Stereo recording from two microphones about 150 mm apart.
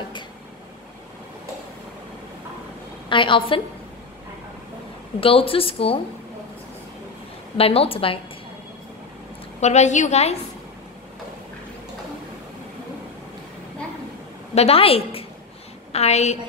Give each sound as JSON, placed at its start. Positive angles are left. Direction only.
{"t": 3.1, "sound": "a woman's voice", "side_deg": 35}
{"t": 5.2, "sound": "a woman's voice", "side_deg": 40}
{"t": 7.5, "sound": "a woman's voice", "side_deg": 40}
{"t": 9.6, "sound": "a woman's voice", "side_deg": 50}
{"t": 14.5, "sound": "a woman's voice", "side_deg": 40}